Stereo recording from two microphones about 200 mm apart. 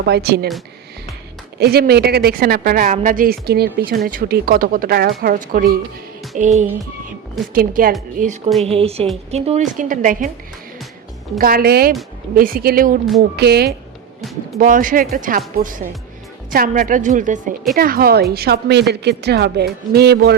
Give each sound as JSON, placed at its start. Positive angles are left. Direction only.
{"t": 0.0, "sound": "a woman's voice", "side_deg": -50}
{"t": 1.5, "sound": "a woman's voice", "side_deg": -50}
{"t": 8.6, "sound": "a woman's voice", "side_deg": -30}
{"t": 11.3, "sound": "a woman's voice", "side_deg": -45}
{"t": 14.2, "sound": "speech", "side_deg": 0}
{"t": 14.6, "sound": "a woman's voice", "side_deg": -40}